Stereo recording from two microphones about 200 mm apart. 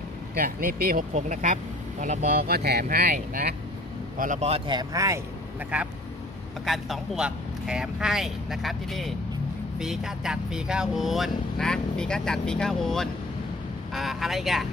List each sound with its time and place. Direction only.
0.4 s speech: 45° right (ahead or behind)
4.2 s speech: 35° right (ahead or behind); by 5.2 s 15° right (ahead or behind)
5.7 s speech: 5° right (ahead or behind)